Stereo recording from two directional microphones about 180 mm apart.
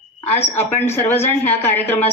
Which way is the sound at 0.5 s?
10° left (ahead or behind).